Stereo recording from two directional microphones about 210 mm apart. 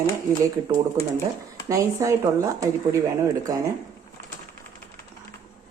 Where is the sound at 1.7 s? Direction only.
15° right (ahead or behind).